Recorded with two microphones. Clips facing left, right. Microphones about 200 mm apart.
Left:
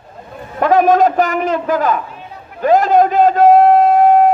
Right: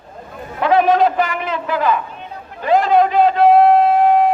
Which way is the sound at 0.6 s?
45° left (ahead or behind).